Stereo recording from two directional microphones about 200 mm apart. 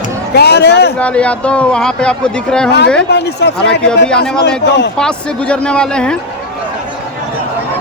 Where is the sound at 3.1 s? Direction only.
55° left (ahead or behind).